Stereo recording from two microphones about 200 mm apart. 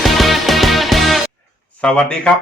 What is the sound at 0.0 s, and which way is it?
Music, centre (ahead or behind).